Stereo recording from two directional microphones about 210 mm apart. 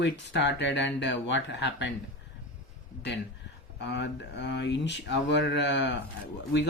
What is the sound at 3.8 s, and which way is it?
Speech, 55° left (ahead or behind).